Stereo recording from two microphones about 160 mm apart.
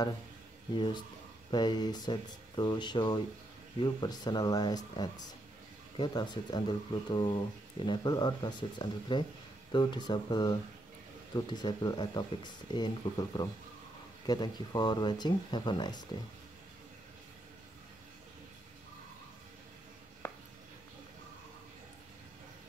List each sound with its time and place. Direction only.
0.7 s speech: 30° left (ahead or behind)